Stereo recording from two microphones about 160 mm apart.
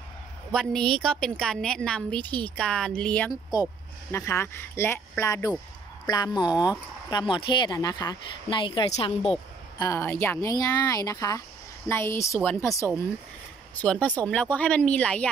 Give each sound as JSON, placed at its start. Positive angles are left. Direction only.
{"t": 0.5, "sound": "a woman's voice", "side_deg": 5}
{"t": 3.5, "sound": "speech", "side_deg": 25}
{"t": 9.8, "sound": "speech", "side_deg": 20}